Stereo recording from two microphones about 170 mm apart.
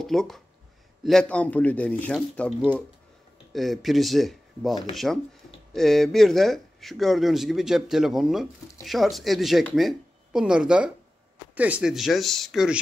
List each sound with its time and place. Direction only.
0.0 s speech: centre (ahead or behind)